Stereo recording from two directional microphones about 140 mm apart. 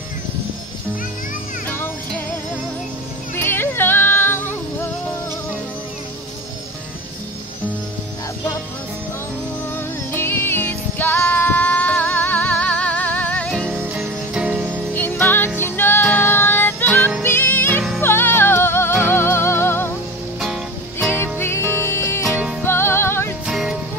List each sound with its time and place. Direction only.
1.7 s music: 15° left (ahead or behind)
3.3 s yodeling: 15° left (ahead or behind)
10.1 s music: 15° left (ahead or behind); by 14.7 s 5° right (ahead or behind)
15.0 s music: 15° left (ahead or behind)
20.3 s music: centre (ahead or behind)
21.1 s music: 15° left (ahead or behind)
22.2 s music: 5° right (ahead or behind)
22.6 s music: 15° left (ahead or behind)
23.4 s music: 5° right (ahead or behind)